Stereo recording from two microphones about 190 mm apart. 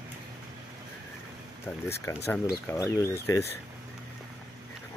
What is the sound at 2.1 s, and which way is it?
Speech, 15° left (ahead or behind).